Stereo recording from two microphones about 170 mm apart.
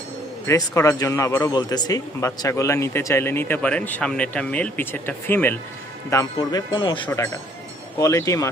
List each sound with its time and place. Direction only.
0.4 s speech: 15° left (ahead or behind)